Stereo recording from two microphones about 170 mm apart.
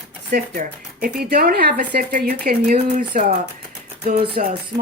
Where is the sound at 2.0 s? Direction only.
55° right (ahead or behind).